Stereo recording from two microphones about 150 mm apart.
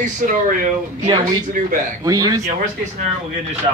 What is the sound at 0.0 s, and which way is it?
Speech, 65° right (ahead or behind).